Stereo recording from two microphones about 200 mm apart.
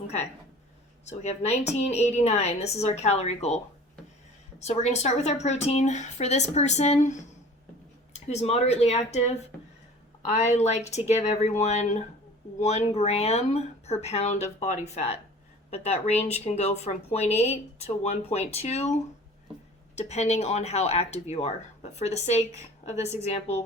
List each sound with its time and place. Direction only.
1.2 s a woman's voice: 35° left (ahead or behind)
4.6 s a woman's voice: 35° left (ahead or behind)
10.5 s a woman's voice: 35° left (ahead or behind)
20.0 s a woman's voice: 35° left (ahead or behind)